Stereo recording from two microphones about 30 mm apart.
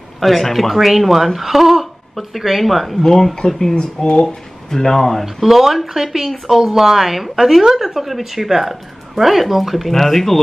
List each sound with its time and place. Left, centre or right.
0.2 s speech: centre
3.0 s speech: centre
3.7 s speech: left
4.6 s speech: centre
5.2 s speech: centre